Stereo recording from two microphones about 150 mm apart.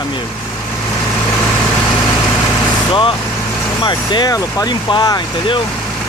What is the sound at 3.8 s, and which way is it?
Speech, 30° left (ahead or behind).